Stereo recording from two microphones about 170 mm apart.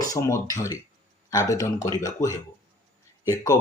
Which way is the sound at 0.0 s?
20° left (ahead or behind).